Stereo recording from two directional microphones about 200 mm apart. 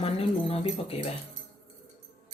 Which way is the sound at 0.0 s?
30° left (ahead or behind).